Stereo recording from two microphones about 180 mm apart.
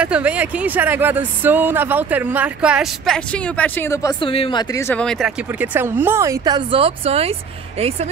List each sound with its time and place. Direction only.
0.0 s speech: 5° right (ahead or behind); by 4.8 s 25° left (ahead or behind)
4.8 s speech: 5° left (ahead or behind)
5.6 s speech: 10° right (ahead or behind); by 7.3 s 35° right (ahead or behind)